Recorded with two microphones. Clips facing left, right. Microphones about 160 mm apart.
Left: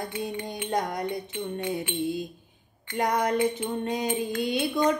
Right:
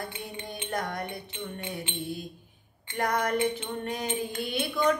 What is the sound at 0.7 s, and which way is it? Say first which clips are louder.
Music: left 5 dB; 15° left (ahead or behind).